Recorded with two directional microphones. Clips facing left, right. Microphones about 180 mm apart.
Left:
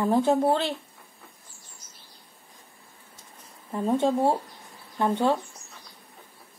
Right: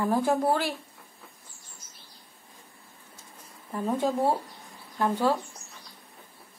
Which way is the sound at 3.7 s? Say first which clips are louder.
Left 3 dB; 25° left (ahead or behind).